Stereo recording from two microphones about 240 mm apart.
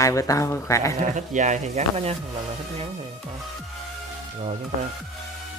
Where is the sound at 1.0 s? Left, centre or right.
Right.